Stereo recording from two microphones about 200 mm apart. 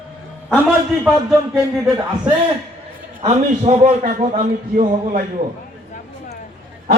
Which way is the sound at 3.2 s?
30° right (ahead or behind).